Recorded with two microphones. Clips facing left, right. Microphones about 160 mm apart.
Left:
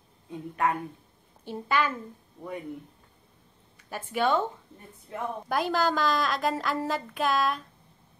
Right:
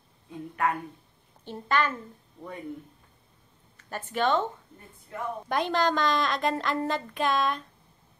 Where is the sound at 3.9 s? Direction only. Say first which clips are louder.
Even; 10° left (ahead or behind).